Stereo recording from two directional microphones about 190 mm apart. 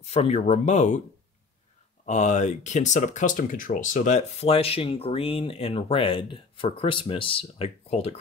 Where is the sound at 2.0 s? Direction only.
40° left (ahead or behind).